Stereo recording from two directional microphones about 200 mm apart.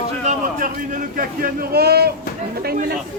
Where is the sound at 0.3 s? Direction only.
40° right (ahead or behind).